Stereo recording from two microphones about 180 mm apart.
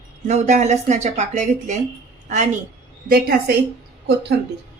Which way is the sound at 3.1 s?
60° right (ahead or behind).